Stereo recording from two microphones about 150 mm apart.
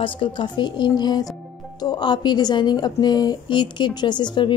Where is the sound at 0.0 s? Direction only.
35° left (ahead or behind).